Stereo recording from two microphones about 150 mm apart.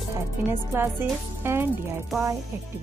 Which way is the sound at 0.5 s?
15° right (ahead or behind).